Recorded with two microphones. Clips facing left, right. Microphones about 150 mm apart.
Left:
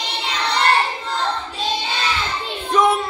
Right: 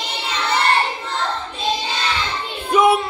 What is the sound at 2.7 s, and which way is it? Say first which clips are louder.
Child singing: right 2 dB; 10° right (ahead or behind).